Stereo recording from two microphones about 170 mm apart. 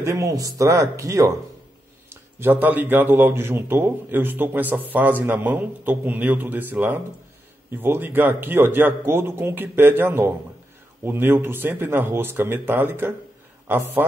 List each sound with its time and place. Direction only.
0.0 s a man's voice: 15° right (ahead or behind)